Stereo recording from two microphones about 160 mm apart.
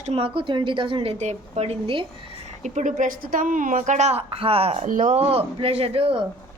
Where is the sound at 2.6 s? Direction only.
50° right (ahead or behind).